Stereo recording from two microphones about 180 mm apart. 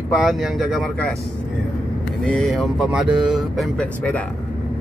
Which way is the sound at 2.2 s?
5° left (ahead or behind).